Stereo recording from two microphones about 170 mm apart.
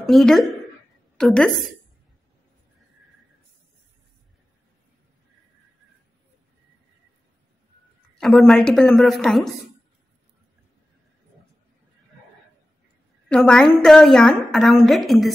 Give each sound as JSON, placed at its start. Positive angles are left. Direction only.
{"t": 0.0, "sound": "a woman's voice", "side_deg": 0}
{"t": 8.2, "sound": "a woman's voice", "side_deg": 0}
{"t": 13.3, "sound": "a woman's voice", "side_deg": 5}